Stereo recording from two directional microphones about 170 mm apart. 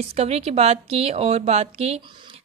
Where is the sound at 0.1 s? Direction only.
35° right (ahead or behind).